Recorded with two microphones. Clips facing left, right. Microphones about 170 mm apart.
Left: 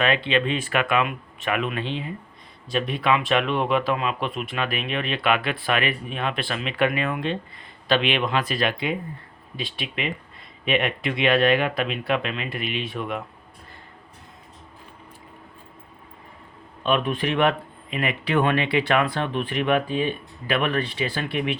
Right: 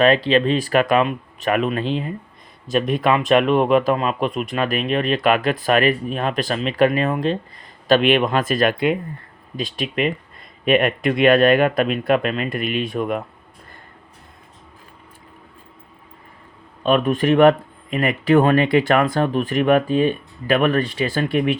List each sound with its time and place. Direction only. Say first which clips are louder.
0.0 s speech: right 7 dB; 35° right (ahead or behind)
16.8 s speech: right 6 dB; 45° right (ahead or behind)